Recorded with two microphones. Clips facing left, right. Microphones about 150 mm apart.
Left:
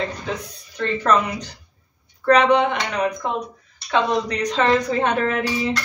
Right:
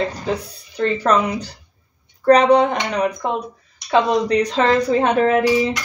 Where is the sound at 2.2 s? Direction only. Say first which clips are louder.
Right 3 dB; 40° right (ahead or behind).